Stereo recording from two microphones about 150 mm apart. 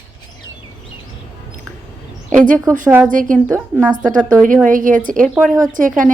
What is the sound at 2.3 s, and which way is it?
Speech, 60° right (ahead or behind).